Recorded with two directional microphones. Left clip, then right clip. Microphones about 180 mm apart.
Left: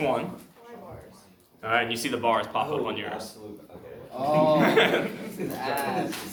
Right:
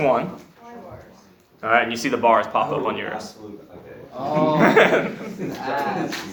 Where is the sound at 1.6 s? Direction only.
30° right (ahead or behind).